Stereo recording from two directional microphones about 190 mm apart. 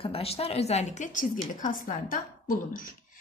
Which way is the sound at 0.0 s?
30° left (ahead or behind).